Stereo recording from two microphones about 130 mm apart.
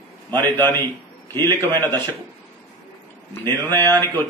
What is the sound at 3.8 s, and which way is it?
Speech, 15° left (ahead or behind).